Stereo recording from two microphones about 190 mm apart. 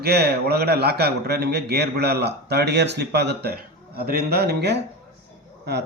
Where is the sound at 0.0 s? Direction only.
55° right (ahead or behind).